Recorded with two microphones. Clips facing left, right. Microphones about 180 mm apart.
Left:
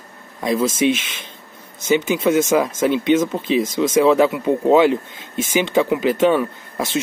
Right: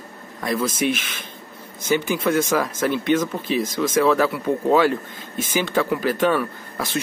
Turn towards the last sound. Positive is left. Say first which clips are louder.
# left 4 dB
turn(degrees=20)  # may be behind; listen again after turning